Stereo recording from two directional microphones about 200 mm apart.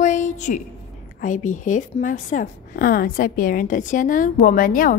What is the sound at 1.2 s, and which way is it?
A woman's voice, 40° left (ahead or behind).